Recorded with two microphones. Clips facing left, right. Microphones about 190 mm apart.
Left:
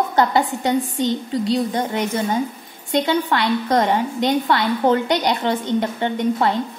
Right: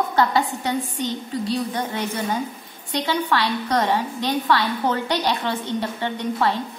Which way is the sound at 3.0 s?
25° left (ahead or behind).